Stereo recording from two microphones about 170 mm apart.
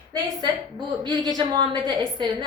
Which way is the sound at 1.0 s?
25° right (ahead or behind).